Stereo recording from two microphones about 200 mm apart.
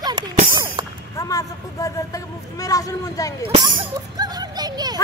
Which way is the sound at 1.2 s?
15° left (ahead or behind).